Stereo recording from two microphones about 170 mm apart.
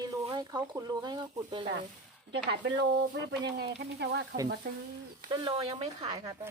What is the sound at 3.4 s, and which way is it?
Speech, 75° right (ahead or behind).